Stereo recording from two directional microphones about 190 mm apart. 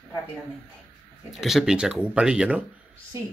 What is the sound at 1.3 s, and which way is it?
A man's voice, centre (ahead or behind).